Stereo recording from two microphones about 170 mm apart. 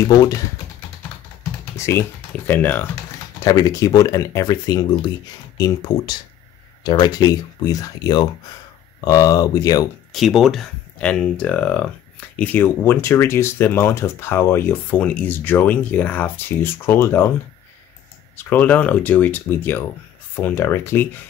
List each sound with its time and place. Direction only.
1.8 s speech: 15° left (ahead or behind)
3.3 s speech: 20° left (ahead or behind)
10.1 s speech: centre (ahead or behind)
18.3 s speech: 10° left (ahead or behind)